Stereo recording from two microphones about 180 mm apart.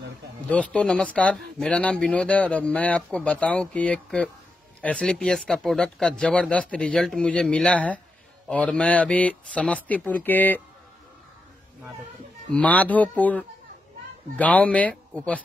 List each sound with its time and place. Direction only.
0.5 s speech: 5° left (ahead or behind)
12.5 s speech: 10° left (ahead or behind)